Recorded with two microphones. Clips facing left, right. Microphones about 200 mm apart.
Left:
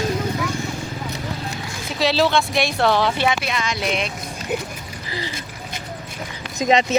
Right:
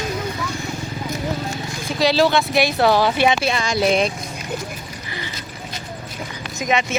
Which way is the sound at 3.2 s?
25° right (ahead or behind).